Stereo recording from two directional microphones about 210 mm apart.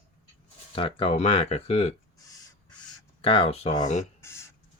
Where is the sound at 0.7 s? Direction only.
25° left (ahead or behind).